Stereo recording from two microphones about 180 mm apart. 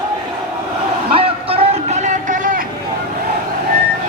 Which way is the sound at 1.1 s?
30° right (ahead or behind).